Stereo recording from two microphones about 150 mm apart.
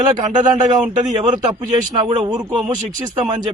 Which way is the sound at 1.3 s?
30° right (ahead or behind).